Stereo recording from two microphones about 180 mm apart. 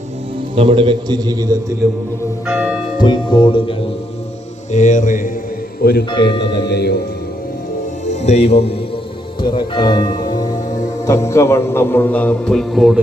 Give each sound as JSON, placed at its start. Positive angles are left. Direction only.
{"t": 0.5, "sound": "a man's voice", "side_deg": -30}
{"t": 2.5, "sound": "speech", "side_deg": -5}
{"t": 3.0, "sound": "speech", "side_deg": 25}
{"t": 4.7, "sound": "mantra", "side_deg": 45}
{"t": 5.8, "sound": "speech", "side_deg": 60}
{"t": 8.0, "sound": "speech", "side_deg": 40}